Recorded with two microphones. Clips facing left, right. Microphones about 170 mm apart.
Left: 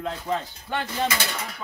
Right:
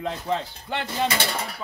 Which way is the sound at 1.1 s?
30° right (ahead or behind).